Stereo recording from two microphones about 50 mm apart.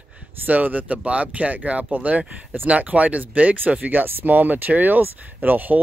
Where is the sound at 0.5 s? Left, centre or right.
Right.